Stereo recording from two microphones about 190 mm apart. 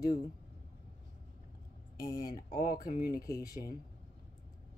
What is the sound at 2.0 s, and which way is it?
Speech, 20° left (ahead or behind).